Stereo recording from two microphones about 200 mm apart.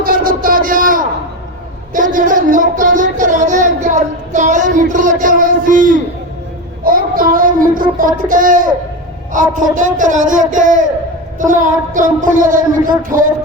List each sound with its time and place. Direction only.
0.0 s a sound: 45° right (ahead or behind)
6.8 s child singing: 45° right (ahead or behind)
7.8 s speech: 45° right (ahead or behind)